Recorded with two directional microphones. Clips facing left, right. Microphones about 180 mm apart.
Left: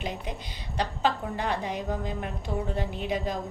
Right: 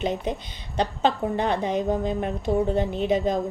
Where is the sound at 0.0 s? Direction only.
25° right (ahead or behind).